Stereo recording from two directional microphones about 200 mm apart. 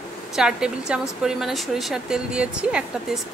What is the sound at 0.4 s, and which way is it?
Speech, 5° right (ahead or behind).